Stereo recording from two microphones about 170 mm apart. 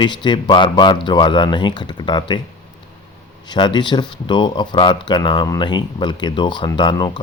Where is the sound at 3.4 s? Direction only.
25° left (ahead or behind).